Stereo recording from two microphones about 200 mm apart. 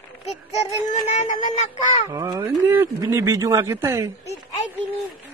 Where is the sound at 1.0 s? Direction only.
35° left (ahead or behind).